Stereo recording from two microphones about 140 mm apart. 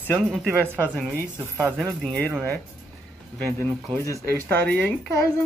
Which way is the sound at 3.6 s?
20° left (ahead or behind).